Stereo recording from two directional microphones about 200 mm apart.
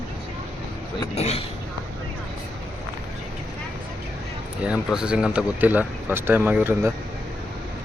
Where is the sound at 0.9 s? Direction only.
30° left (ahead or behind).